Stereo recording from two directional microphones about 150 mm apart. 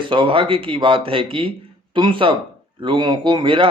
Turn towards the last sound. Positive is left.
turn(degrees=-35)  # may be behind; listen again after turning